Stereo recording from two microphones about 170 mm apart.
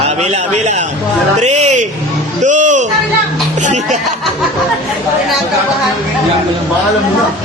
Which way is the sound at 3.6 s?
45° right (ahead or behind).